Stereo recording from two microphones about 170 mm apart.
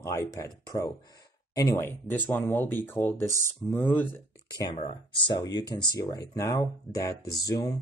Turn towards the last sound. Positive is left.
turn(degrees=20)  # may be behind; listen again after turning